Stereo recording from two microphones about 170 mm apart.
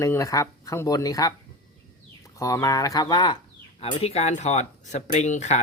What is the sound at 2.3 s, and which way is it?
Speech, 20° left (ahead or behind).